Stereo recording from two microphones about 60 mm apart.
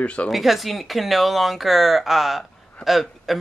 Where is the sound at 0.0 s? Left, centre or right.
Left.